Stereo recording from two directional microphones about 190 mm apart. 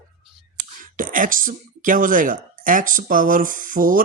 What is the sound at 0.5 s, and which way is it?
Speech, 45° right (ahead or behind).